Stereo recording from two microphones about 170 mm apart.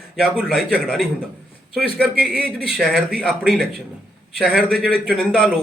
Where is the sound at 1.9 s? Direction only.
5° right (ahead or behind).